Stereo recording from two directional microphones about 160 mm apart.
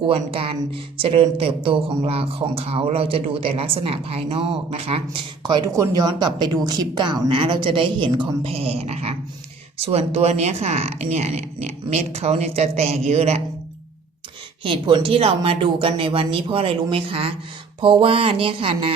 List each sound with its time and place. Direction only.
0.0 s speech: 35° right (ahead or behind)
14.6 s speech: 30° right (ahead or behind)